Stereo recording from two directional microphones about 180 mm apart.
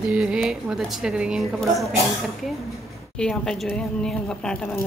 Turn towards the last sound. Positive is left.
turn(degrees=5)  # may be behind; listen again after turning